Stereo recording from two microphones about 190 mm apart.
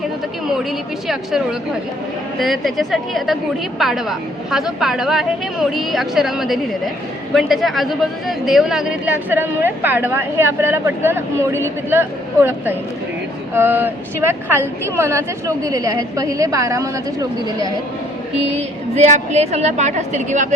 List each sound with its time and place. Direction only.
1.0 s a woman's voice: centre (ahead or behind); by 17.7 s 20° right (ahead or behind)
18.5 s a woman's voice: 35° right (ahead or behind)